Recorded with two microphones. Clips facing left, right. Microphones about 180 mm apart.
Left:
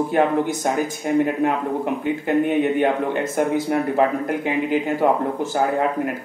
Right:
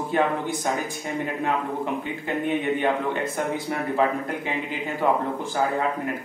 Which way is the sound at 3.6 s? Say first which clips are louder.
Left 5 dB; 55° left (ahead or behind).